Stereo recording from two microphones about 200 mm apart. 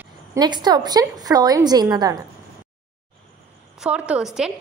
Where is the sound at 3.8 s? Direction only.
5° right (ahead or behind).